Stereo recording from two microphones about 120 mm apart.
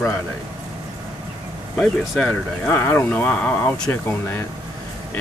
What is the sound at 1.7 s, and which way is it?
Speech, 5° left (ahead or behind).